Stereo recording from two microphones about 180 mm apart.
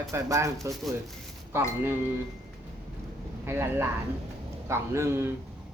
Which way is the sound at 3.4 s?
10° right (ahead or behind).